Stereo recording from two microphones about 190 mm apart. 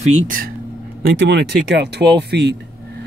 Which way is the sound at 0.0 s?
45° right (ahead or behind).